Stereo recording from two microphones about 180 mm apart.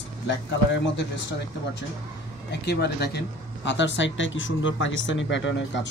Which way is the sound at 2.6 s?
65° left (ahead or behind).